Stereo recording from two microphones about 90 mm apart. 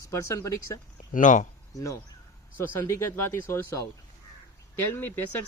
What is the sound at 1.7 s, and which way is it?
Speech, 35° left (ahead or behind).